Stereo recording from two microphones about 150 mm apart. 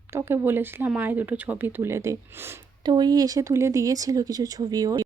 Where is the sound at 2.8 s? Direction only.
30° right (ahead or behind).